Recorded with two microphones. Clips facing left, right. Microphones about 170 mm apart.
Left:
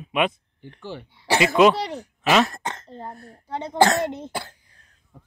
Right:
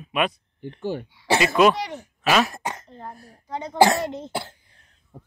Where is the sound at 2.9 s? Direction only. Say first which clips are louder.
Left 2 dB; 30° left (ahead or behind).